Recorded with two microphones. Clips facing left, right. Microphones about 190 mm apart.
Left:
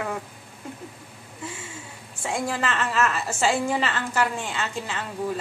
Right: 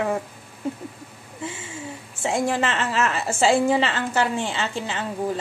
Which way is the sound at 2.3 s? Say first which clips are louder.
Right 4 dB; 25° right (ahead or behind).